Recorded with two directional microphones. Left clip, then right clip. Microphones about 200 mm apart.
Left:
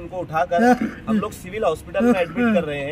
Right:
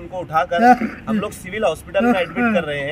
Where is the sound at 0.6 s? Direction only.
30° left (ahead or behind).